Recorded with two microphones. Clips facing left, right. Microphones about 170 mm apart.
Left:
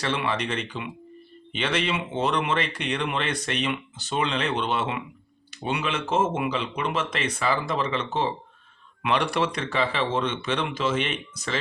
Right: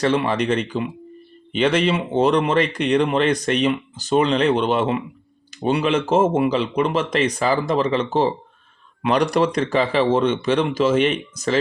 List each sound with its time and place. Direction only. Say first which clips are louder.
0.0 s a man's voice: right 8 dB; 40° right (ahead or behind)